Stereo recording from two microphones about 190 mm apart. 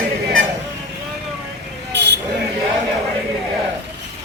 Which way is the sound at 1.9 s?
65° right (ahead or behind).